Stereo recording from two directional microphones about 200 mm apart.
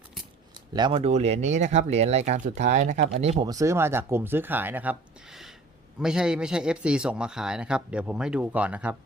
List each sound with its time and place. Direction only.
0.7 s speech: 20° right (ahead or behind)
3.4 s a man's voice: 15° right (ahead or behind)